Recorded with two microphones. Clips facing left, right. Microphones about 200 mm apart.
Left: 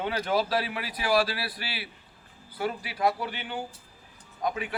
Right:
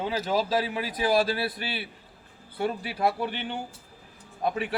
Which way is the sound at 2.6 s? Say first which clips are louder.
Right 1 dB; 30° right (ahead or behind).